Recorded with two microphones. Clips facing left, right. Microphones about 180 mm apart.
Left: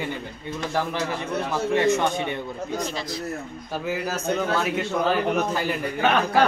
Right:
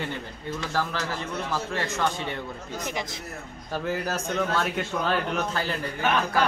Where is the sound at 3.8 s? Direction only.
5° left (ahead or behind).